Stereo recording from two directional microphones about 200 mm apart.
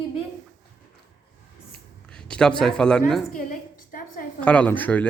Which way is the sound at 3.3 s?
45° left (ahead or behind).